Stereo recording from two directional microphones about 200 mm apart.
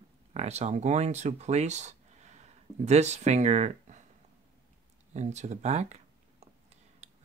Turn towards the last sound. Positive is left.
turn(degrees=-35)  # may be behind; listen again after turning